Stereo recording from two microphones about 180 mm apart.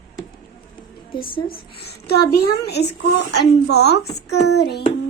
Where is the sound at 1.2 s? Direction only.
55° left (ahead or behind).